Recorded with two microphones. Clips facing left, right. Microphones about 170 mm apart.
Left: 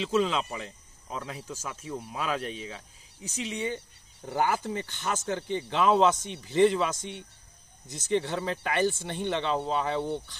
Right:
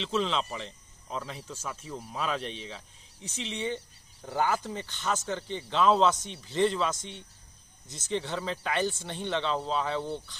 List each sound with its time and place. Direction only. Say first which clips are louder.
0.0 s speech: left 3 dB; 5° left (ahead or behind)